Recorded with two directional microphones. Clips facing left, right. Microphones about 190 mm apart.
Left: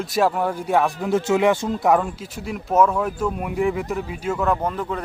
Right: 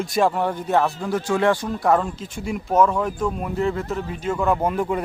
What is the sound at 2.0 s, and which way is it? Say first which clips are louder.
Speech: right 1 dB; centre (ahead or behind).